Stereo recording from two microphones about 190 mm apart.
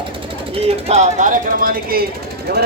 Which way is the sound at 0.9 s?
35° right (ahead or behind).